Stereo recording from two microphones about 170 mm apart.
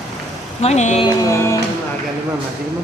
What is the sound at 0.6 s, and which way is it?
Speech, 40° left (ahead or behind).